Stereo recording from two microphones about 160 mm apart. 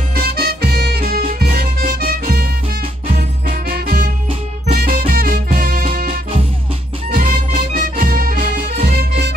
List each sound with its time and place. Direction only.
0.1 s music: 70° right (ahead or behind)
3.4 s music: 65° right (ahead or behind)
7.1 s music: 60° right (ahead or behind)
8.9 s music: 85° right